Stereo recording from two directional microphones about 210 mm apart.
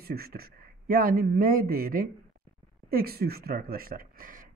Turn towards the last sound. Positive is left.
turn(degrees=-40)  # may be behind; listen again after turning